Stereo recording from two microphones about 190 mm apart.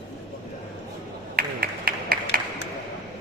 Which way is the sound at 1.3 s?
50° right (ahead or behind).